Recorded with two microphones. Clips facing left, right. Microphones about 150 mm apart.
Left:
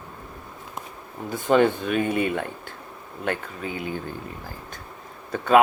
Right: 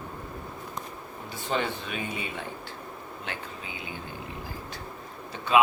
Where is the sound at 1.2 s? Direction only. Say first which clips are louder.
Left 11 dB; 50° left (ahead or behind).